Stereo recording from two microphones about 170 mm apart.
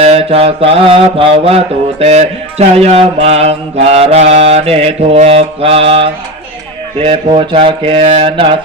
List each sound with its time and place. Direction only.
0.0 s mantra: 35° right (ahead or behind)